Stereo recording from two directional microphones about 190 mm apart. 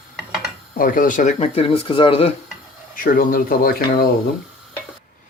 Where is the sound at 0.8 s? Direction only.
45° left (ahead or behind); by 2.3 s 30° left (ahead or behind).